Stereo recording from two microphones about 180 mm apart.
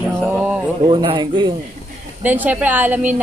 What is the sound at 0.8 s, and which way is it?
Speech, 25° right (ahead or behind).